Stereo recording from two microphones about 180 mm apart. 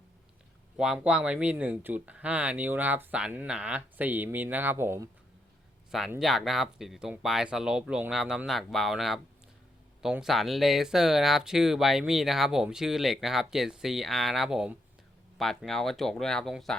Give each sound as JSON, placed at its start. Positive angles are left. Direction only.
{"t": 0.8, "sound": "speech", "side_deg": -5}
{"t": 5.9, "sound": "speech", "side_deg": 0}